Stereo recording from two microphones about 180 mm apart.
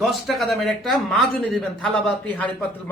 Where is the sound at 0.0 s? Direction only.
Centre (ahead or behind).